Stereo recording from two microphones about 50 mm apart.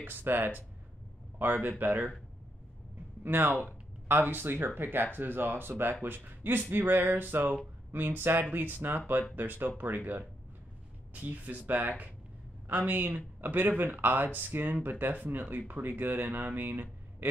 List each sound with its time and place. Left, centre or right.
0.0 s speech: right
3.3 s speech: right